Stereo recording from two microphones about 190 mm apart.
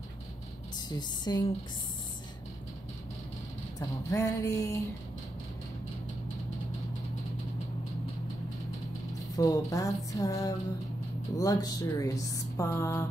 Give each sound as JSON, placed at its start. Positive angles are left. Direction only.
{"t": 0.7, "sound": "a sound", "side_deg": 20}
{"t": 4.1, "sound": "speech", "side_deg": 15}
{"t": 9.4, "sound": "speech", "side_deg": 15}